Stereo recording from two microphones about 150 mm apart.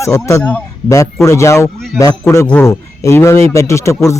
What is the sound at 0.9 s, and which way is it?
Speech, 20° left (ahead or behind).